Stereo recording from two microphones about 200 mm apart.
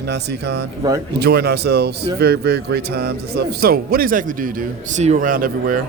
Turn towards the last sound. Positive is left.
turn(degrees=-45)  # may be behind; listen again after turning